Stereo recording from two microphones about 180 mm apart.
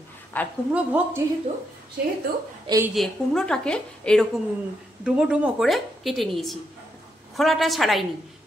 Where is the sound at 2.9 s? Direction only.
Centre (ahead or behind).